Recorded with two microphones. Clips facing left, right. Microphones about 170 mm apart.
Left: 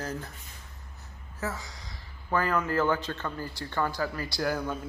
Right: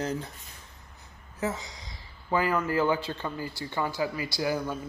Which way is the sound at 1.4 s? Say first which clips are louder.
Right 4 dB; 20° right (ahead or behind).